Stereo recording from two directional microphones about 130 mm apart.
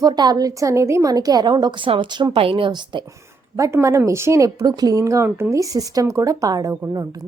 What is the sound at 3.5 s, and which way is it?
Speech, 20° right (ahead or behind).